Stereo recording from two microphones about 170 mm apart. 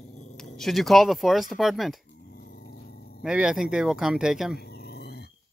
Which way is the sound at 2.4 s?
65° left (ahead or behind).